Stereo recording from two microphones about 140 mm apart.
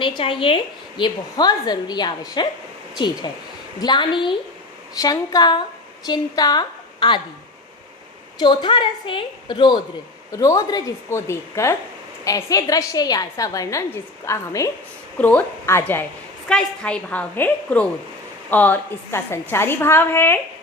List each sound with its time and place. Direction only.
0.0 s a woman's voice: 40° left (ahead or behind)
8.4 s a woman's voice: 35° left (ahead or behind)
10.3 s a woman's voice: 20° left (ahead or behind)
15.2 s a woman's voice: 10° left (ahead or behind)